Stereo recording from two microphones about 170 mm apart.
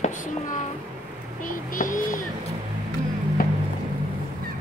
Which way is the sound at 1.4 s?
50° left (ahead or behind).